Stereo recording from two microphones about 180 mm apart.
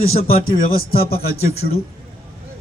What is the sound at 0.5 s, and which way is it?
Speech, 55° left (ahead or behind).